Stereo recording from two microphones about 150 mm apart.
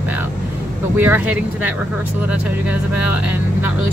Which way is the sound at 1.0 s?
15° right (ahead or behind).